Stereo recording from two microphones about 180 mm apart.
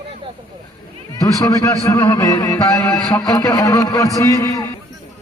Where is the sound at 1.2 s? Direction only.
20° left (ahead or behind).